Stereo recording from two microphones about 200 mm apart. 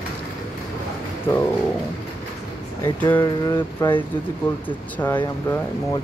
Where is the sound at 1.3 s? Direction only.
10° left (ahead or behind).